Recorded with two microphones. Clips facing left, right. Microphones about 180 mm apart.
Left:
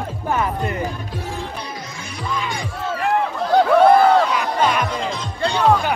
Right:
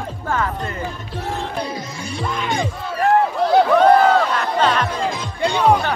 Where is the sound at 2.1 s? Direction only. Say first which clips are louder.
Right 2 dB; 25° right (ahead or behind).